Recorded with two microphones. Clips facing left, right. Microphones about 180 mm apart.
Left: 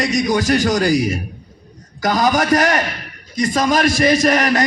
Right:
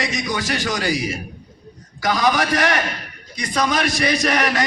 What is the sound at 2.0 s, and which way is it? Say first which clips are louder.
A man's voice: left 3 dB; 45° left (ahead or behind).